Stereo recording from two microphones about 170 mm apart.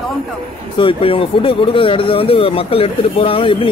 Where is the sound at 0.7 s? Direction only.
30° left (ahead or behind).